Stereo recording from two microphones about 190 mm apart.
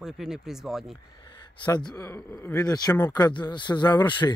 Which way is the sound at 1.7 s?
20° left (ahead or behind).